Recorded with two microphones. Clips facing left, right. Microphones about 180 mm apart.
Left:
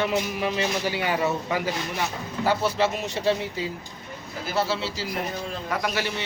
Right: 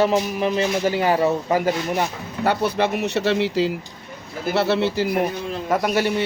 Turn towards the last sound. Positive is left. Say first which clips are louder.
# right 8 dB
turn(degrees=-50)  # may be behind; listen again after turning